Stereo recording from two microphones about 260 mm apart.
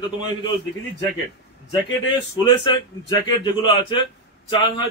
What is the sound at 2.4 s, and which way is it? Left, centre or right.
Speech, centre.